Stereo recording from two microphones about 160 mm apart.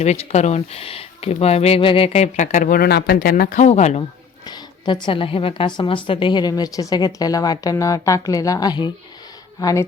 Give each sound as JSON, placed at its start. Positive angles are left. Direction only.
{"t": 0.0, "sound": "speech", "side_deg": 40}
{"t": 4.4, "sound": "a woman's voice", "side_deg": 25}